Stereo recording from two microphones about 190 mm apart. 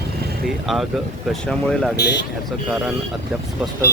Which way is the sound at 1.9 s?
60° left (ahead or behind).